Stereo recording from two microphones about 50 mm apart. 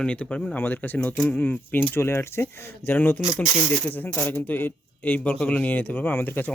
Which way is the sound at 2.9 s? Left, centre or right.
Left.